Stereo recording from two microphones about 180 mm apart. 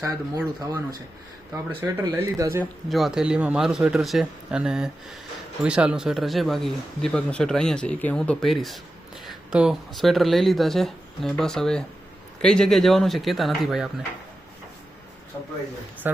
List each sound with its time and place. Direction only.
0.0 s speech: 15° right (ahead or behind)
2.9 s speech: centre (ahead or behind)
16.0 s speech: 10° right (ahead or behind)